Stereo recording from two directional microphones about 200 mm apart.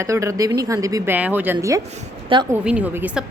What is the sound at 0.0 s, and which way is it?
A woman's voice, 15° right (ahead or behind).